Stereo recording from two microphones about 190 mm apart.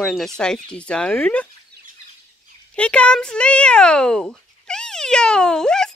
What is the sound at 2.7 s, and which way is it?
Speech, 5° left (ahead or behind).